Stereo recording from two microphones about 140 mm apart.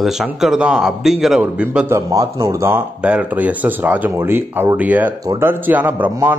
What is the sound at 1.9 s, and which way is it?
A man's voice, 20° right (ahead or behind).